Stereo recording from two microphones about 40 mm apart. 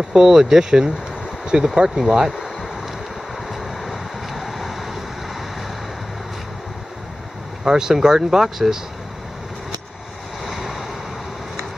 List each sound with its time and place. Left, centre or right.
0.1 s speech: centre
1.4 s a sound: centre
2.0 s speech: centre
2.3 s a sound: centre
3.4 s vehicle: centre
7.6 s speech: centre
10.4 s vehicle: centre